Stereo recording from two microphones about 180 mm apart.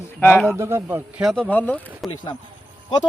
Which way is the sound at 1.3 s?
5° left (ahead or behind).